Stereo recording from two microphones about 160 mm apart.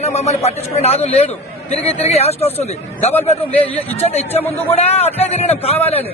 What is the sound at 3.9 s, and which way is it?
A man's voice, 40° left (ahead or behind).